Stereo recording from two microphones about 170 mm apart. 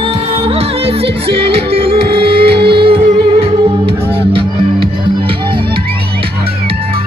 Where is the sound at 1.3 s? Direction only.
35° right (ahead or behind).